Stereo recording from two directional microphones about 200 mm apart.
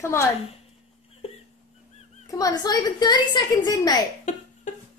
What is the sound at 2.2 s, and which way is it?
A woman's voice, 20° left (ahead or behind).